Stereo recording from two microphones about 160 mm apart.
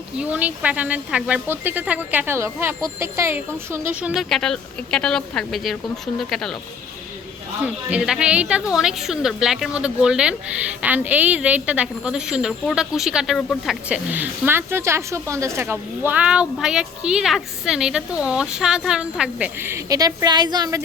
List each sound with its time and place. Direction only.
0.2 s a woman's voice: 10° right (ahead or behind)
4.1 s a woman's voice: centre (ahead or behind)
7.6 s a woman's voice: 10° right (ahead or behind); by 20.8 s 25° right (ahead or behind)